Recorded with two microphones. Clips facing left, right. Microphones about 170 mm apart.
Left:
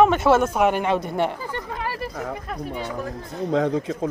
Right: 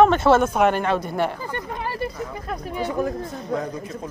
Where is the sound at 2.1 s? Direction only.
65° left (ahead or behind).